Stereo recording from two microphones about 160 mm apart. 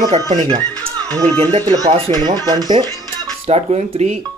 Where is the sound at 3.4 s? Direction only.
40° right (ahead or behind).